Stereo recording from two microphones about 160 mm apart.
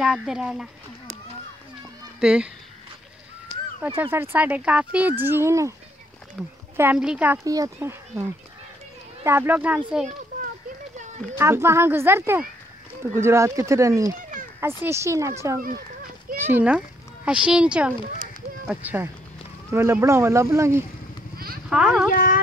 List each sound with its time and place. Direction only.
0.0 s speech: 5° right (ahead or behind)
2.1 s speech: 5° right (ahead or behind)
3.8 s speech: 15° right (ahead or behind)
6.4 s speech: centre (ahead or behind)
7.4 s speech: 20° right (ahead or behind); by 10.1 s 5° right (ahead or behind)
11.3 s speech: 15° right (ahead or behind)
21.6 s speech: 5° right (ahead or behind)
22.1 s carnatic music: 60° left (ahead or behind)